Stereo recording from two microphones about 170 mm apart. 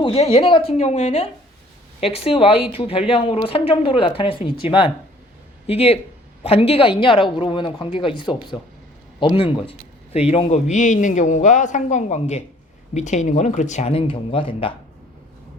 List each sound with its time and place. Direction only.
0.0 s a man's voice: 30° left (ahead or behind)